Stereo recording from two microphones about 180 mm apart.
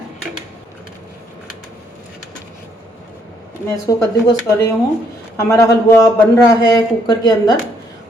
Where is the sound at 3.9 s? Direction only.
20° left (ahead or behind).